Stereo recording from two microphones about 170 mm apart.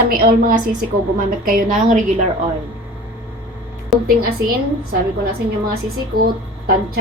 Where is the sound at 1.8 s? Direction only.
45° right (ahead or behind).